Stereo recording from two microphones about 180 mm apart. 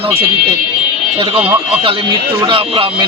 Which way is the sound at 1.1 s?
30° right (ahead or behind).